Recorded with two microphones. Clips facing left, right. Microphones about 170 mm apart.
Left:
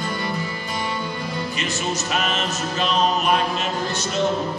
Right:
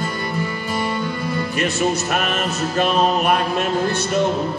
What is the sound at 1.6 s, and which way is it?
Music, 60° right (ahead or behind).